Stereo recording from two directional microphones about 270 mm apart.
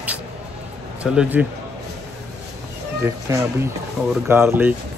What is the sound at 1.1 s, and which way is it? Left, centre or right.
Speech, centre.